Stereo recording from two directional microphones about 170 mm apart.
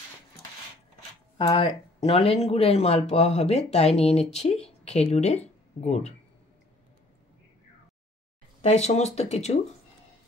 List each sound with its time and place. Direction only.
1.4 s speech: 35° left (ahead or behind)
8.5 s speech: 40° left (ahead or behind)